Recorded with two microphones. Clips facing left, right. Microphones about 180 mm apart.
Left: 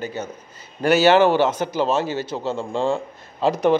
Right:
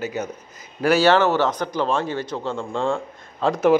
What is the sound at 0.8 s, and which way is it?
A man's voice, 5° left (ahead or behind).